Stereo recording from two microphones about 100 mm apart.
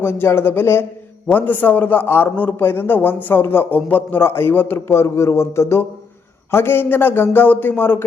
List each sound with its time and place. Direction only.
0.0 s a man's voice: 20° left (ahead or behind)